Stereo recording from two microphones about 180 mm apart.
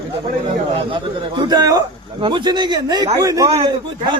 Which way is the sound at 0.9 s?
25° right (ahead or behind).